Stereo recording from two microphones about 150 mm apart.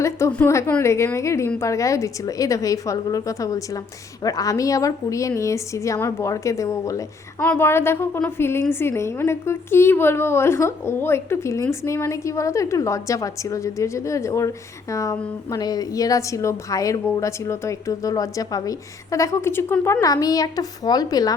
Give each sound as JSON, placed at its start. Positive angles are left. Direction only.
{"t": 0.0, "sound": "a woman's voice", "side_deg": 20}
{"t": 7.3, "sound": "a woman's voice", "side_deg": 10}